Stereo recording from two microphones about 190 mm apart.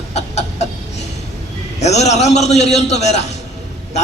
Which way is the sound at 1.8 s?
35° left (ahead or behind).